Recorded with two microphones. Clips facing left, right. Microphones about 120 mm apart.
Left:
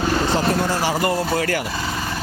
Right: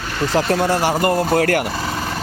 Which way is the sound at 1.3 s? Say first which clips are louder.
Right 5 dB; 60° right (ahead or behind).